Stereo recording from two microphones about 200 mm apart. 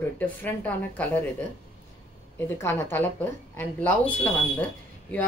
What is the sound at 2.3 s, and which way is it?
Speech, 10° left (ahead or behind).